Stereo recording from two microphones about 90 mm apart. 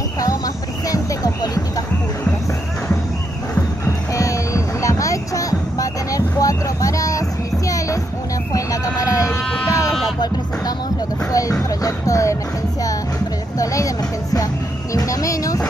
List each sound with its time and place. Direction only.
0.8 s vehicle: 40° left (ahead or behind)
3.5 s music: 30° left (ahead or behind)
8.5 s vehicle: 40° left (ahead or behind)
11.3 s music: 40° left (ahead or behind)
13.6 s a sound: 40° left (ahead or behind)
15.0 s music: 40° left (ahead or behind)